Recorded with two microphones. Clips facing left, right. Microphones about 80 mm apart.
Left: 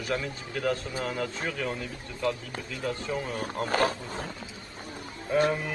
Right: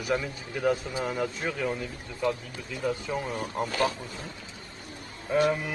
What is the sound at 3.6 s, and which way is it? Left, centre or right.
Speech, left.